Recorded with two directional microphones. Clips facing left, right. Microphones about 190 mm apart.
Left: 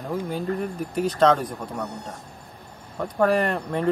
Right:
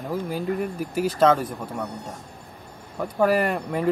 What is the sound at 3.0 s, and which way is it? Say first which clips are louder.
Speech: even; 5° right (ahead or behind).